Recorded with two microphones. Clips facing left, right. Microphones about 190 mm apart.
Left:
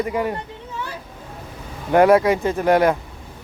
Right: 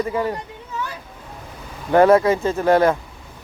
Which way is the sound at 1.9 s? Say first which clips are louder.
Even; 15° left (ahead or behind).